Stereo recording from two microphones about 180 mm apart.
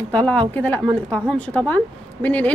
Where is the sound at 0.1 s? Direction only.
10° left (ahead or behind).